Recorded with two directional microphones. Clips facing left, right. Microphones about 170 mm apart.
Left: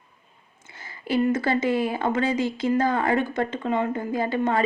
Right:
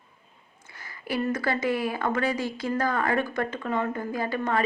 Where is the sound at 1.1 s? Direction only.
25° left (ahead or behind).